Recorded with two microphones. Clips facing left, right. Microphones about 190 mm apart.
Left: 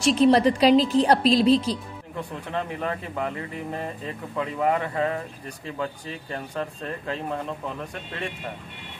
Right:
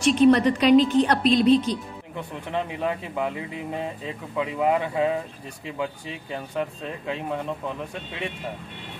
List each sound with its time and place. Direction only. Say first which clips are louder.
0.1 s a woman's voice: right 1 dB; 35° left (ahead or behind)
2.5 s a man's voice: right 2 dB; 5° right (ahead or behind)